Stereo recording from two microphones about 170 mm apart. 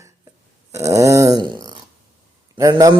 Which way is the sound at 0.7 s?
20° right (ahead or behind).